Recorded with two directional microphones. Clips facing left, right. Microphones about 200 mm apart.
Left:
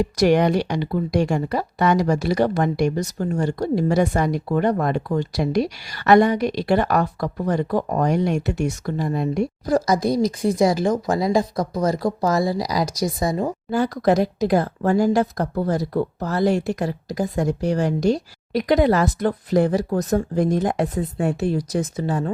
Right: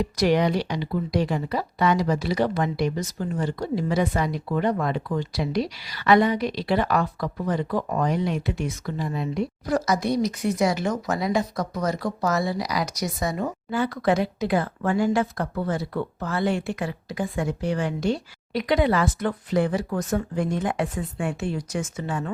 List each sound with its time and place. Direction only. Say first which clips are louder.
0.0 s speech: left 4 dB; 50° left (ahead or behind)
9.7 s a woman's voice: left 4 dB; 35° left (ahead or behind)